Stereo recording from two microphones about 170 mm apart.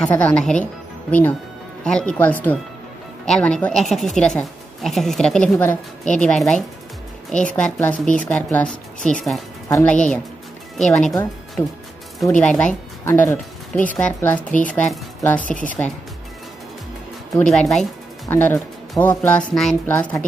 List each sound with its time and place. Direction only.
0.0 s speech: 5° left (ahead or behind)
1.9 s speech: 5° left (ahead or behind)
9.7 s speech: 15° left (ahead or behind)
17.4 s speech: 5° left (ahead or behind)